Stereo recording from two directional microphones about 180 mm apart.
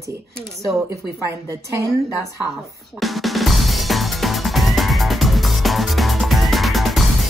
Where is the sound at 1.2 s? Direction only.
15° right (ahead or behind).